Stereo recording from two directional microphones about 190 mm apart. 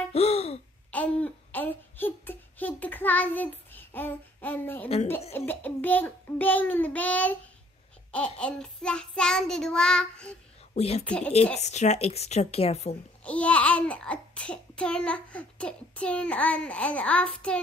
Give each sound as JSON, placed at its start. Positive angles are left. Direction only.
{"t": 0.1, "sound": "laughter", "side_deg": 35}
{"t": 0.9, "sound": "speech", "side_deg": 5}
{"t": 4.8, "sound": "a woman's voice", "side_deg": 30}
{"t": 5.3, "sound": "a child's voice", "side_deg": 10}
{"t": 8.1, "sound": "child singing", "side_deg": 5}
{"t": 10.7, "sound": "speech", "side_deg": 35}
{"t": 11.1, "sound": "a child's voice", "side_deg": 5}
{"t": 11.5, "sound": "a woman's voice", "side_deg": 35}
{"t": 13.2, "sound": "a child's voice", "side_deg": 5}